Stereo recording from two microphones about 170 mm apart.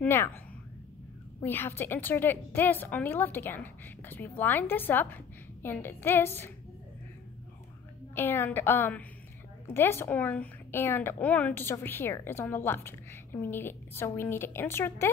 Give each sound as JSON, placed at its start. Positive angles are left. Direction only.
{"t": 0.0, "sound": "speech", "side_deg": 15}
{"t": 1.4, "sound": "speech", "side_deg": 10}
{"t": 8.1, "sound": "speech", "side_deg": 15}